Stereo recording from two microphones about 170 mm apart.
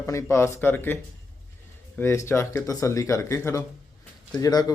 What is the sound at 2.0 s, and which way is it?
Speech, 15° left (ahead or behind).